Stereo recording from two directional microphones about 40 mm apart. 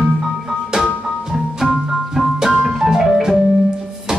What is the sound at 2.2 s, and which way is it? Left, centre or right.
Music, centre.